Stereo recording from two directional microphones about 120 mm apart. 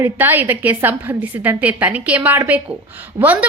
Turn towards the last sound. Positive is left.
turn(degrees=-15)  # may be behind; listen again after turning